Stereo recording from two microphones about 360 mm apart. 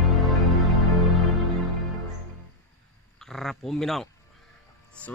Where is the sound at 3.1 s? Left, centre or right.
Centre.